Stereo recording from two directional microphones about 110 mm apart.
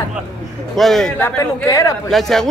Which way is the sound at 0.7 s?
5° left (ahead or behind).